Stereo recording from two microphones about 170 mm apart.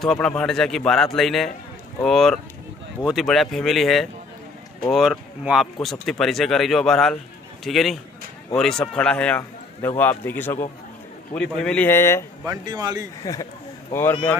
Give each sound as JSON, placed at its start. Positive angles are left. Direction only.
{"t": 0.0, "sound": "a man's voice", "side_deg": 5}
{"t": 12.4, "sound": "speech", "side_deg": -25}
{"t": 13.2, "sound": "speech", "side_deg": 20}